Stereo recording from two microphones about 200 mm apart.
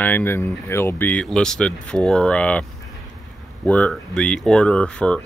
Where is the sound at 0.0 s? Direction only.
10° left (ahead or behind).